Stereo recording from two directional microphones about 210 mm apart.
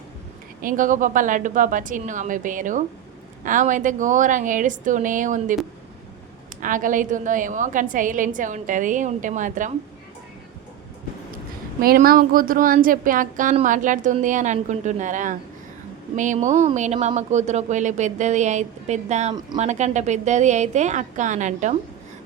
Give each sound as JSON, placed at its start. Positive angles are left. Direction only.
{"t": 0.6, "sound": "a woman's voice", "side_deg": -40}
{"t": 6.6, "sound": "a woman's voice", "side_deg": -40}
{"t": 11.8, "sound": "a woman's voice", "side_deg": -45}